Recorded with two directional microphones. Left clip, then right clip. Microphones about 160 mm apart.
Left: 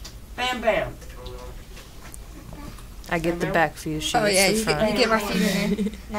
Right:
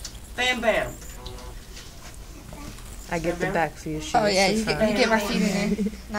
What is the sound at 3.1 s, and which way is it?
Speech, 20° left (ahead or behind).